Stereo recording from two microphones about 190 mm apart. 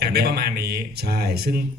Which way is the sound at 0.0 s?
55° right (ahead or behind).